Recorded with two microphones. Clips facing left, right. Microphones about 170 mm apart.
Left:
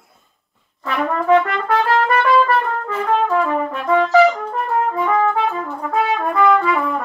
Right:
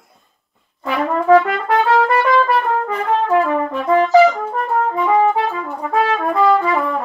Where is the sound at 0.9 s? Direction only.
Centre (ahead or behind).